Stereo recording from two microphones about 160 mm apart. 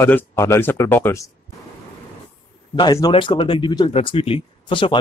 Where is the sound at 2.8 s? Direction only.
25° left (ahead or behind).